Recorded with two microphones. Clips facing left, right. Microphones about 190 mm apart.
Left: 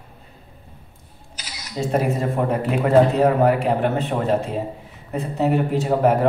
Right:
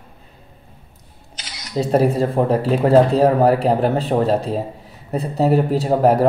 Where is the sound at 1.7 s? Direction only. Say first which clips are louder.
Right 5 dB; 35° right (ahead or behind).